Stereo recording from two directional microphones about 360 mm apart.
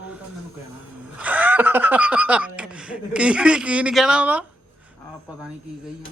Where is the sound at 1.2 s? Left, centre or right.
Centre.